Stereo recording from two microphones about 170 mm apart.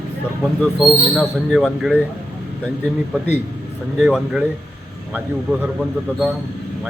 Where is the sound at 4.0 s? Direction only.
5° right (ahead or behind).